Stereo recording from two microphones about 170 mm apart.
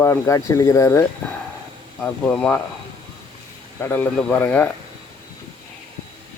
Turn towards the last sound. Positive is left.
turn(degrees=10)  # may be behind; listen again after turning